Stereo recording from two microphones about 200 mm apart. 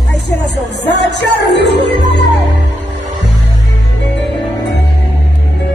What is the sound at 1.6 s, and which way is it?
Music, 60° left (ahead or behind).